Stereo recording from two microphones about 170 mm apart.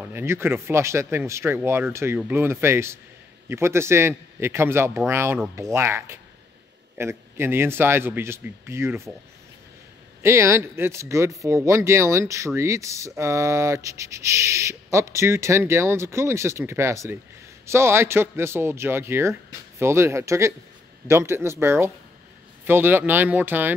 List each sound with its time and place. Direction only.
0.1 s speech: 15° right (ahead or behind)
10.2 s speech: 15° right (ahead or behind)